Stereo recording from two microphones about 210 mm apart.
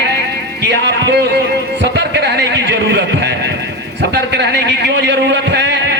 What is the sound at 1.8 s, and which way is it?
A man's voice, 55° right (ahead or behind).